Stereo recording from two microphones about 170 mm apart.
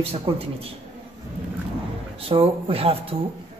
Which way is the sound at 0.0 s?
35° right (ahead or behind).